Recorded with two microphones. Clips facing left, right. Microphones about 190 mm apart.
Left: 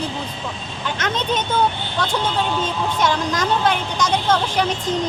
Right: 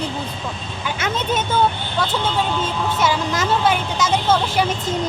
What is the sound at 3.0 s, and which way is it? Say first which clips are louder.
A woman's voice: even; 5° right (ahead or behind).